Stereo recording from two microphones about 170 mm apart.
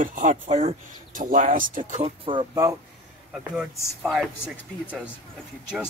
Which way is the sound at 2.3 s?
30° right (ahead or behind).